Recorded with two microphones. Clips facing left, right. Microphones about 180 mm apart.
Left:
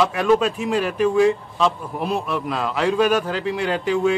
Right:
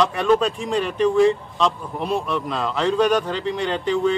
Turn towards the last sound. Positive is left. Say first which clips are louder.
# left 1 dB
turn(degrees=5)  # may be behind; listen again after turning